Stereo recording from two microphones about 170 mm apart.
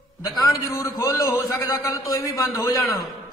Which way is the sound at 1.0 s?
20° left (ahead or behind).